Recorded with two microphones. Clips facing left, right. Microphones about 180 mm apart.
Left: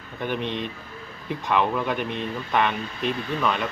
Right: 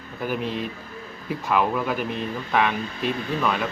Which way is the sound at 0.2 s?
5° right (ahead or behind).